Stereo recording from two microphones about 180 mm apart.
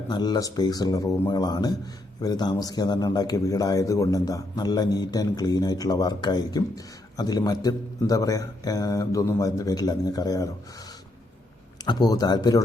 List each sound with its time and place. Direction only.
0.1 s a man's voice: 25° left (ahead or behind)
11.9 s a man's voice: 20° left (ahead or behind)